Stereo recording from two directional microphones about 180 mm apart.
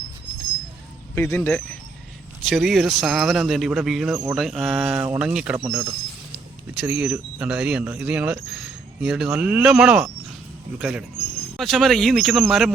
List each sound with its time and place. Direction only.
1.1 s speech: 10° left (ahead or behind); by 5.5 s 5° right (ahead or behind)
5.5 s speech: 15° right (ahead or behind)
6.7 s speech: 5° right (ahead or behind)